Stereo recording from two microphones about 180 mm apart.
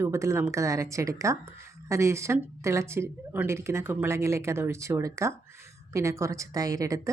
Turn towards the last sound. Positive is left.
turn(degrees=-20)  # may be behind; listen again after turning